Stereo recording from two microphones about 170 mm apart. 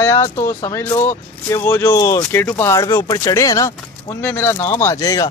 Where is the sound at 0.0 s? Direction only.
20° left (ahead or behind).